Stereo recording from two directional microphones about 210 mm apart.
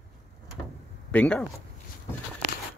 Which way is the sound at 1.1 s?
5° left (ahead or behind).